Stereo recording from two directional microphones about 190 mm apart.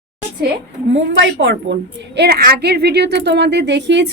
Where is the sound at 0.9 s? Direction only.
75° right (ahead or behind).